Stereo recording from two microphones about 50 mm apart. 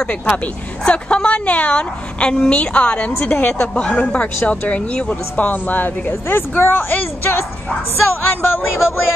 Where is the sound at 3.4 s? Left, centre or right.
Left.